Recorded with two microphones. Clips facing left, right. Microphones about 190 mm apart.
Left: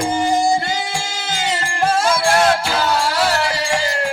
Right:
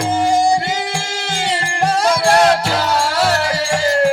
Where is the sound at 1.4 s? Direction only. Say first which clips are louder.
Right 1 dB; 35° right (ahead or behind).